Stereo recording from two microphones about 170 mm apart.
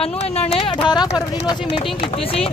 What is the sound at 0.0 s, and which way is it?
Speech, 35° left (ahead or behind).